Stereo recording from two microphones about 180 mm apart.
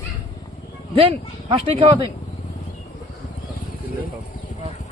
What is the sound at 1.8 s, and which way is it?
Speech, 30° right (ahead or behind).